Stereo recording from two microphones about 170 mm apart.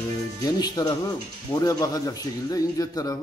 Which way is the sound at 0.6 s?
25° left (ahead or behind).